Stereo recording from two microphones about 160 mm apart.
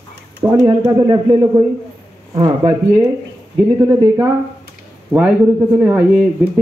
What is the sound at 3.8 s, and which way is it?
Speech, 25° right (ahead or behind).